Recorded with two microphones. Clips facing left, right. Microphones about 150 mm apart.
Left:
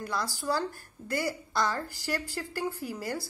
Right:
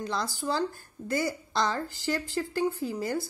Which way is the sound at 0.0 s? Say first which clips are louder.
Right 2 dB; 20° right (ahead or behind).